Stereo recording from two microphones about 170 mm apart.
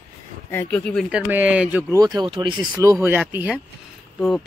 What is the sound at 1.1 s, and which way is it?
Speech, 5° right (ahead or behind).